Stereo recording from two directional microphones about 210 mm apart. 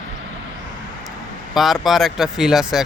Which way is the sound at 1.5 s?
Centre (ahead or behind).